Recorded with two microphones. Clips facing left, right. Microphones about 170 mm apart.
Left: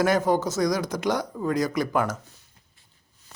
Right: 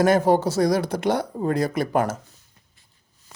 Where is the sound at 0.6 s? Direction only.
40° right (ahead or behind).